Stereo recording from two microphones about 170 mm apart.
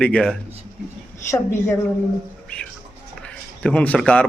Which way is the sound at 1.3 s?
15° left (ahead or behind).